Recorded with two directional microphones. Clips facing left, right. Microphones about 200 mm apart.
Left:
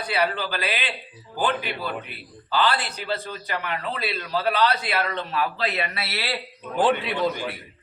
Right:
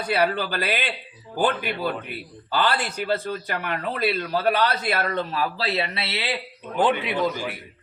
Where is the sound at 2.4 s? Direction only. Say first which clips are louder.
Even; 50° right (ahead or behind); by 6.4 s 20° right (ahead or behind).